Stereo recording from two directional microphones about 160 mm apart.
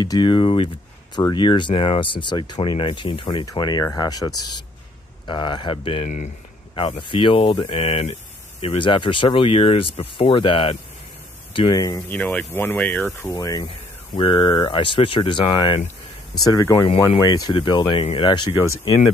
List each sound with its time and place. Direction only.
0.0 s speech: 25° left (ahead or behind)
12.1 s speech: 10° left (ahead or behind)
13.3 s speech: 25° left (ahead or behind)
16.8 s speech: 35° left (ahead or behind)